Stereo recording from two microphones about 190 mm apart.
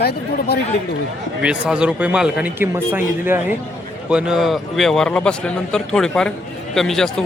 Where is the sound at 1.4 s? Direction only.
5° right (ahead or behind).